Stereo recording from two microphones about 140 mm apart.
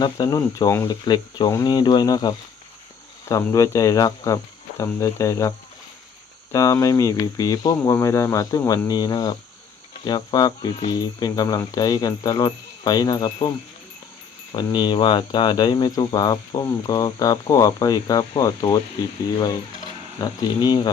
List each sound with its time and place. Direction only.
0.0 s speech: 30° left (ahead or behind)
14.5 s speech: 30° left (ahead or behind)